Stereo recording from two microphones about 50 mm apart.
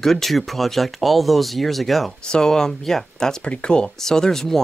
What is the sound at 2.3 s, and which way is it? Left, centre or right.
Speech, centre.